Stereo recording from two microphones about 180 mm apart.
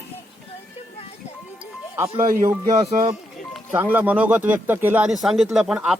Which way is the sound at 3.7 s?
10° right (ahead or behind).